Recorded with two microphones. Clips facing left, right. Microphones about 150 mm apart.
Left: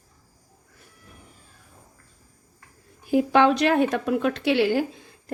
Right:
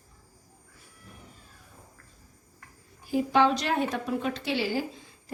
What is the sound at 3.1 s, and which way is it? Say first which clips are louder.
A woman's voice: left 5 dB; 60° left (ahead or behind).